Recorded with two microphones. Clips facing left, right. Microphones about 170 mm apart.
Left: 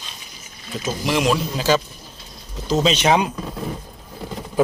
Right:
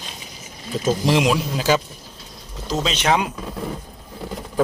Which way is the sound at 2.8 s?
20° left (ahead or behind).